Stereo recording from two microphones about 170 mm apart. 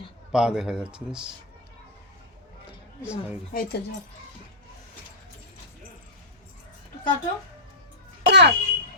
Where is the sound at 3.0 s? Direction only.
10° right (ahead or behind).